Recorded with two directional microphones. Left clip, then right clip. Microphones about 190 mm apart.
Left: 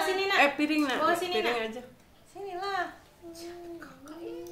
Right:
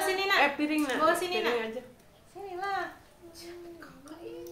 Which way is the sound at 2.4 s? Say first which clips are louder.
Left 2 dB; 55° left (ahead or behind).